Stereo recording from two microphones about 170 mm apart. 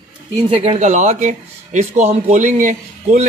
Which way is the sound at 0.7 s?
45° right (ahead or behind).